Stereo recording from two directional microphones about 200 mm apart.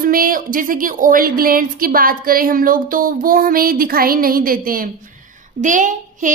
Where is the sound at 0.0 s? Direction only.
45° right (ahead or behind).